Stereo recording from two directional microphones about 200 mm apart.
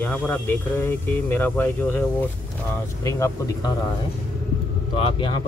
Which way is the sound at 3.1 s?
15° left (ahead or behind).